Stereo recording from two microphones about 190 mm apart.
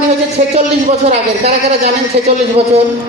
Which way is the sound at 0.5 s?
35° right (ahead or behind).